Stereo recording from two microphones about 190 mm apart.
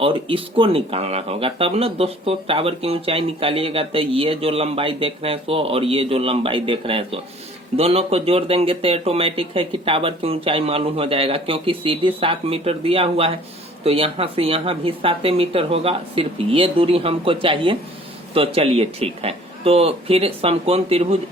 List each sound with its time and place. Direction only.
0.0 s speech: 30° right (ahead or behind)